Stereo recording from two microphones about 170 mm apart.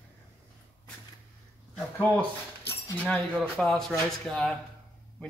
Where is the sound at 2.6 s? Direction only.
10° left (ahead or behind).